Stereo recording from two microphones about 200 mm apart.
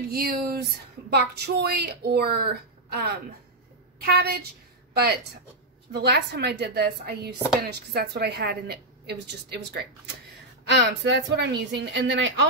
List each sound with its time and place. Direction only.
0.1 s speech: 50° right (ahead or behind); by 12.4 s 65° right (ahead or behind)